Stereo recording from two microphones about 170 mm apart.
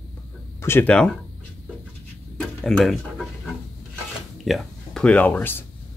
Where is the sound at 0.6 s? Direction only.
10° left (ahead or behind).